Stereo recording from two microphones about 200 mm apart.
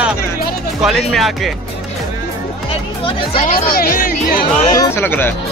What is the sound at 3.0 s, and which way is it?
Speech, 25° left (ahead or behind).